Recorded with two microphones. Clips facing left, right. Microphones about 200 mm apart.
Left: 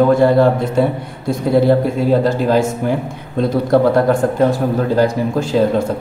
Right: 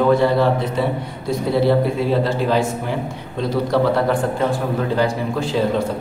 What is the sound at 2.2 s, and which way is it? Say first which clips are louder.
Speech: left 4 dB; 45° left (ahead or behind).